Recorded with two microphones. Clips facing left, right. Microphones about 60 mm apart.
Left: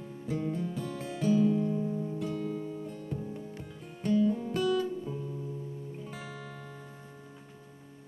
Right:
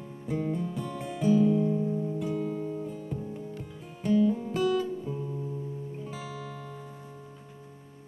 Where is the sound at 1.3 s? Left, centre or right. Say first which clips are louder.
Right 3 dB; centre.